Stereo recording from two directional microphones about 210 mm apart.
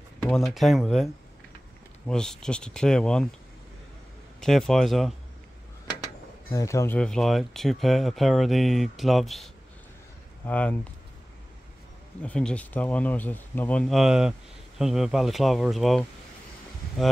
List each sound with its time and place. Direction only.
0.3 s speech: centre (ahead or behind)
4.4 s speech: centre (ahead or behind)
6.5 s speech: 15° left (ahead or behind)
12.2 s speech: 5° left (ahead or behind)